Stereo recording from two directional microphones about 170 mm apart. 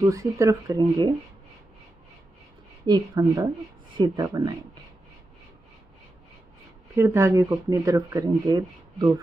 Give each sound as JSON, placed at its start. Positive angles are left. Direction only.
{"t": 0.0, "sound": "speech", "side_deg": -20}
{"t": 2.9, "sound": "speech", "side_deg": -25}
{"t": 7.0, "sound": "speech", "side_deg": -15}